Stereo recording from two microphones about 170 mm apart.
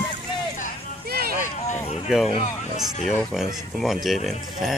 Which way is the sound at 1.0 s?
65° right (ahead or behind).